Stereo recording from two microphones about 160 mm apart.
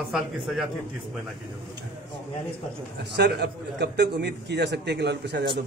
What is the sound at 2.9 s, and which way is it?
A man's voice, 90° right.